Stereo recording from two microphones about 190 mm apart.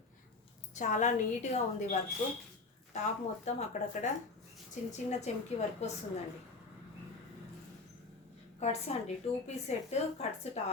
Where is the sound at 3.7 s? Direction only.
40° left (ahead or behind).